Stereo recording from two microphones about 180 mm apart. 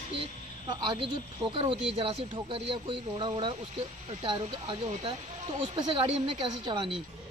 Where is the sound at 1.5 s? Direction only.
30° right (ahead or behind).